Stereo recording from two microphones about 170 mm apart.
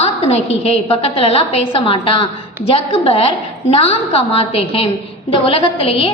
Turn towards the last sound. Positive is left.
turn(degrees=30)  # may be behind; listen again after turning